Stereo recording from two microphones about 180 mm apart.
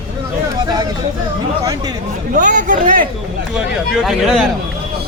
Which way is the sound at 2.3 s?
45° right (ahead or behind).